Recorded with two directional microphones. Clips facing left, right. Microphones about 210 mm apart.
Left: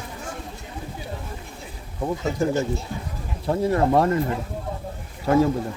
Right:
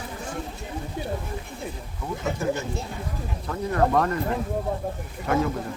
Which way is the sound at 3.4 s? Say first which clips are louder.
Left 4 dB; 30° left (ahead or behind).